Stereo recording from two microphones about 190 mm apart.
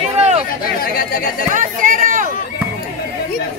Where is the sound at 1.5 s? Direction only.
45° right (ahead or behind).